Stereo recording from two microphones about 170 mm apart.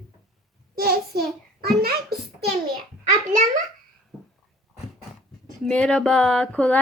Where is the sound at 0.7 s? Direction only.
65° right (ahead or behind).